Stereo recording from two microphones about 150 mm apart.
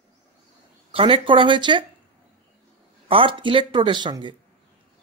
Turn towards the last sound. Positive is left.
turn(degrees=-30)  # may be behind; listen again after turning